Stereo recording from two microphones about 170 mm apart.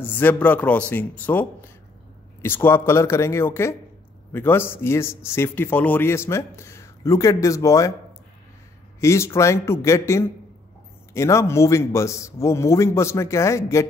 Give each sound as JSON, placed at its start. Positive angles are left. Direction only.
{"t": 0.0, "sound": "a man's voice", "side_deg": 10}
{"t": 9.0, "sound": "a man's voice", "side_deg": 15}